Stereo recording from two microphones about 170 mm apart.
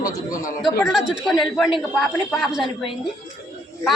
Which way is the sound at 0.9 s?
Centre (ahead or behind).